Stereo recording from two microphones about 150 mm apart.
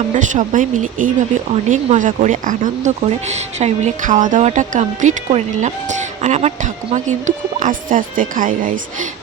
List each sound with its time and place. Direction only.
0.1 s speech: 55° right (ahead or behind)